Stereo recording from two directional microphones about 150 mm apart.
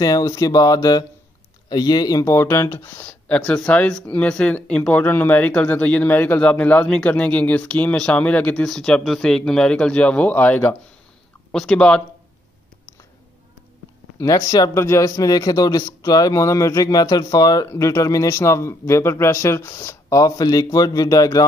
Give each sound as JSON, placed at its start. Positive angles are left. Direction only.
{"t": 0.0, "sound": "a man's voice", "side_deg": 20}
{"t": 14.1, "sound": "a man's voice", "side_deg": 20}